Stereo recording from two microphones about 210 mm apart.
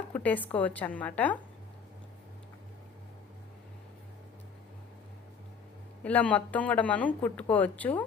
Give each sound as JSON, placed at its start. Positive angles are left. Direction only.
{"t": 0.1, "sound": "speech", "side_deg": 10}
{"t": 6.0, "sound": "speech", "side_deg": 5}